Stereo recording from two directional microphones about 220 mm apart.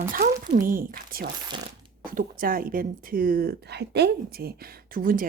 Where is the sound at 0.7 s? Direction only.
40° right (ahead or behind).